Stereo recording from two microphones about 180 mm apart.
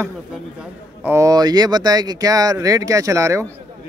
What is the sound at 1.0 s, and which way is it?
Speech, 15° right (ahead or behind).